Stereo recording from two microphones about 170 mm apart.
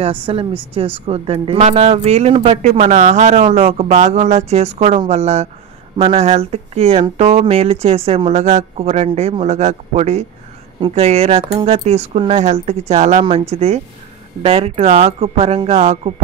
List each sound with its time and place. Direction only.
0.0 s a woman's voice: 30° right (ahead or behind)